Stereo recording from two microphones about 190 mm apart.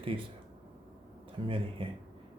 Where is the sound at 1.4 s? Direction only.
30° right (ahead or behind).